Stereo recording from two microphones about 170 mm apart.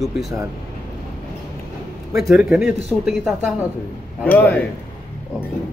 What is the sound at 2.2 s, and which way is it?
Speech, 5° right (ahead or behind).